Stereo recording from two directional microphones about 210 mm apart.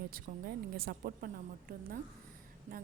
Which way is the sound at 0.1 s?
45° right (ahead or behind).